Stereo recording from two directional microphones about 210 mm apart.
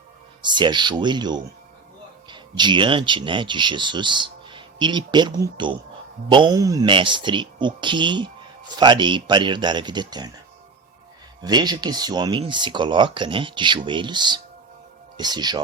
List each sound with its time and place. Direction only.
0.4 s speech: 20° right (ahead or behind)
11.4 s speech: 20° right (ahead or behind)